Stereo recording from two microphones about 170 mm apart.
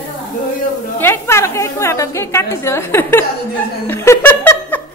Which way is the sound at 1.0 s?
15° left (ahead or behind).